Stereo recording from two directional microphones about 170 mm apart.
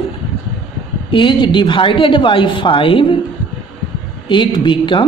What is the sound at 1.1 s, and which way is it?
A woman's voice, 30° left (ahead or behind).